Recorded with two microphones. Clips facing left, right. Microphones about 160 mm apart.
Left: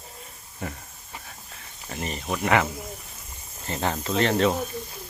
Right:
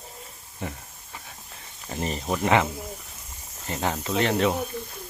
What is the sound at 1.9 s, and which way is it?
Speech, 30° right (ahead or behind).